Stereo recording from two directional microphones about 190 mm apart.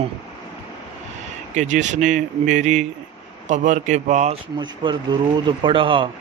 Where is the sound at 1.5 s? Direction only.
40° right (ahead or behind).